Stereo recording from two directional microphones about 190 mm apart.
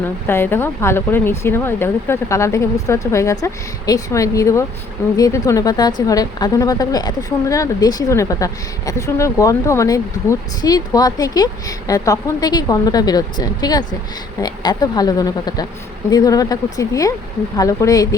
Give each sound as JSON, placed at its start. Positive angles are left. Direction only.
{"t": 0.3, "sound": "a woman's voice", "side_deg": 10}